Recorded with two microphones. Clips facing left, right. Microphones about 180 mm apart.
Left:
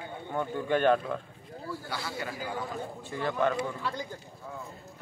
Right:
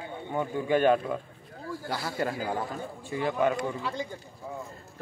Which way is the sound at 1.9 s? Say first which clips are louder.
Right 8 dB; 45° right (ahead or behind).